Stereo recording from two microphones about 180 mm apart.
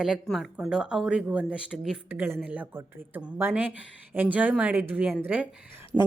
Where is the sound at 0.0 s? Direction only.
Centre (ahead or behind).